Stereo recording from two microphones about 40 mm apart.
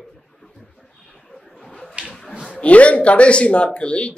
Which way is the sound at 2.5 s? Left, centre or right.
Left.